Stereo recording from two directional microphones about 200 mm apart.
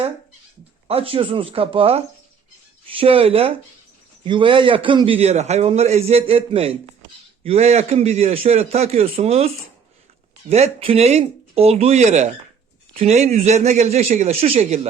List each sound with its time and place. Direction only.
0.9 s a man's voice: 30° right (ahead or behind)
10.5 s a man's voice: 30° right (ahead or behind)